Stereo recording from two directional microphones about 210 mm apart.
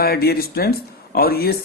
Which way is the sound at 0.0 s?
45° left (ahead or behind).